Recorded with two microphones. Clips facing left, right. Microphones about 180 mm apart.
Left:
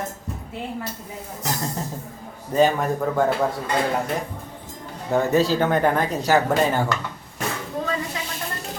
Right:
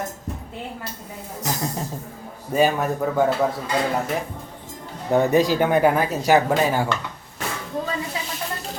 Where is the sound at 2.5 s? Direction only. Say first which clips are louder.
Left 1 dB; 5° right (ahead or behind).